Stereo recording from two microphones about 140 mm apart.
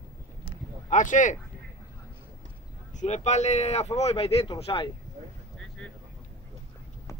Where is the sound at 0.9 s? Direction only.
65° left (ahead or behind).